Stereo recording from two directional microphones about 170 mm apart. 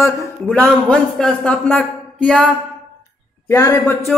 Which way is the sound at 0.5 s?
5° left (ahead or behind).